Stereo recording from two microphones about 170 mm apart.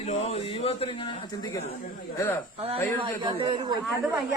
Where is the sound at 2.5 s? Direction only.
35° right (ahead or behind).